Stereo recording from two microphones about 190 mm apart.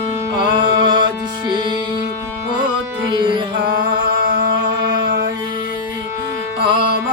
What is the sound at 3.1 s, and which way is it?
Music, 25° right (ahead or behind).